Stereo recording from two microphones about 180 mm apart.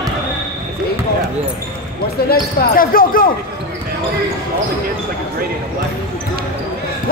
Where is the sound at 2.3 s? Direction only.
55° left (ahead or behind).